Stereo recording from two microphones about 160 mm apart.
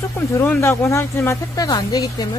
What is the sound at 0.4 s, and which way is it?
Speech, 15° left (ahead or behind).